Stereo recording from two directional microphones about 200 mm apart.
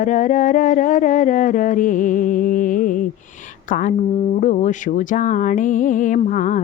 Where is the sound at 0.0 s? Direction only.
40° left (ahead or behind).